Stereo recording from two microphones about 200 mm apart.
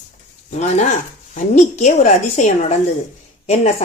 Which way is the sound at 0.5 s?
35° left (ahead or behind).